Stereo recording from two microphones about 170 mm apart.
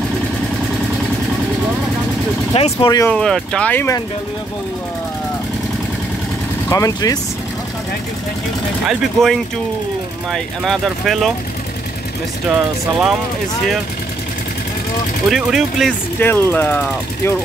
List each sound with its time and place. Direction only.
2.5 s speech: 35° left (ahead or behind)
2.9 s speech: 20° left (ahead or behind)
3.2 s speech: 5° left (ahead or behind)
6.7 s speech: 20° left (ahead or behind)
8.8 s speech: centre (ahead or behind)
15.2 s speech: centre (ahead or behind)
16.2 s speech: 10° left (ahead or behind)